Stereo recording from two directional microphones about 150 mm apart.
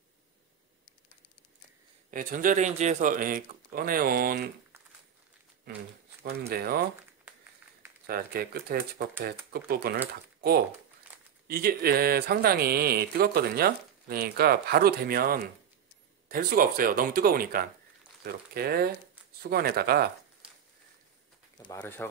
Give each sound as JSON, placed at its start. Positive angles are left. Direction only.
{"t": 2.0, "sound": "speech", "side_deg": -65}
{"t": 6.2, "sound": "speech", "side_deg": -90}
{"t": 8.1, "sound": "speech", "side_deg": -90}
{"t": 9.5, "sound": "speech", "side_deg": -90}
{"t": 11.4, "sound": "speech", "side_deg": -90}
{"t": 16.3, "sound": "speech", "side_deg": -70}
{"t": 18.2, "sound": "speech", "side_deg": -90}
{"t": 21.7, "sound": "speech", "side_deg": 15}